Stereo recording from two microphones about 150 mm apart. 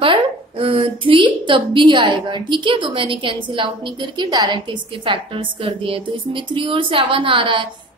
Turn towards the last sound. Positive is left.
turn(degrees=-35)  # may be behind; listen again after turning